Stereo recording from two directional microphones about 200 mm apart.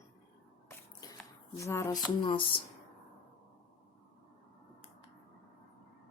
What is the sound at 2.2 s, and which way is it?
Speech, 25° left (ahead or behind).